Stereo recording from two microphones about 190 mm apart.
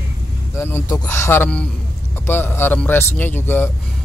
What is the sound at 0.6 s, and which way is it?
A man's voice, 10° left (ahead or behind).